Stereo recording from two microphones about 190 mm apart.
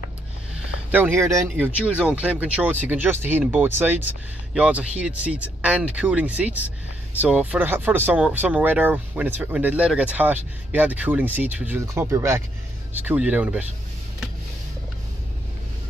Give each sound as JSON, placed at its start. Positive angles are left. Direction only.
{"t": 0.9, "sound": "speech", "side_deg": -15}